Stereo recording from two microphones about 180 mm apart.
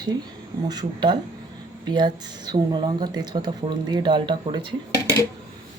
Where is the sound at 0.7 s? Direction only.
25° right (ahead or behind).